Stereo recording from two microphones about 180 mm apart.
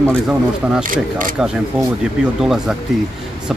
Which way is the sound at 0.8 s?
50° right (ahead or behind).